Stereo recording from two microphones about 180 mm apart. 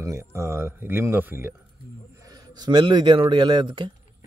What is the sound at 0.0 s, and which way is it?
Speech, 15° right (ahead or behind).